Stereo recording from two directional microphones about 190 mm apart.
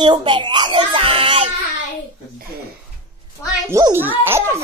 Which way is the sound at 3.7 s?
15° right (ahead or behind).